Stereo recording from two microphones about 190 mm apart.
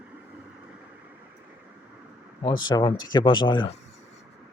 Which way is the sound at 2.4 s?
25° left (ahead or behind).